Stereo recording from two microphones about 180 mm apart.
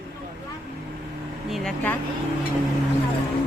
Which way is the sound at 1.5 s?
5° left (ahead or behind).